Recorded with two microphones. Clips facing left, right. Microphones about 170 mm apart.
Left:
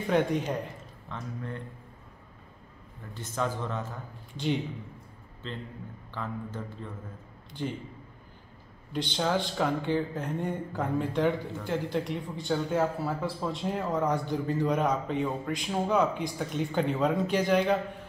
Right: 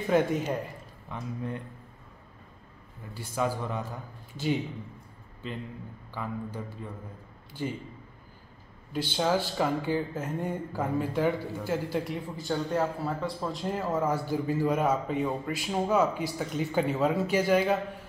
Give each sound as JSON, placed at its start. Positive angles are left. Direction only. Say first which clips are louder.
{"t": 0.1, "sound": "speech", "louder": "right 1 dB", "side_deg": -5}
{"t": 1.0, "sound": "speech", "louder": "right 3 dB", "side_deg": -15}
{"t": 3.2, "sound": "a man's voice", "louder": "right 2 dB", "side_deg": -10}
{"t": 6.1, "sound": "a man's voice", "louder": "right 1 dB", "side_deg": -10}
{"t": 8.9, "sound": "speech", "louder": "right 1 dB", "side_deg": -5}